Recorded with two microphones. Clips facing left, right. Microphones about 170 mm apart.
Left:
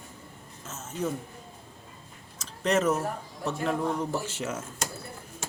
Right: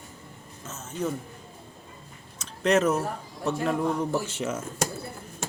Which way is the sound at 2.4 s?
Centre (ahead or behind).